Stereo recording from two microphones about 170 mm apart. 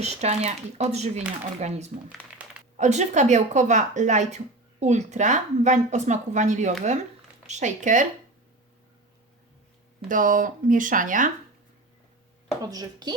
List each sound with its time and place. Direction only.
0.0 s speech: 40° right (ahead or behind)
2.4 s a sound: 10° right (ahead or behind)
2.7 s a woman's voice: 45° right (ahead or behind)
10.1 s a woman's voice: 50° right (ahead or behind)
12.6 s a woman's voice: 25° right (ahead or behind)